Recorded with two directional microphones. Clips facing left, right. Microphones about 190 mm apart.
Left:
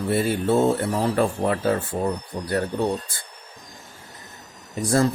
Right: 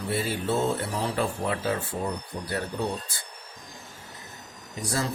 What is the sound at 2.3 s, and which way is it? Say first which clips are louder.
Speech: left 5 dB; 85° left.